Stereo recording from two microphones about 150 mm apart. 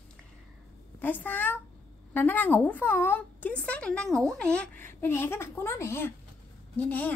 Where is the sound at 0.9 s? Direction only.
10° left (ahead or behind).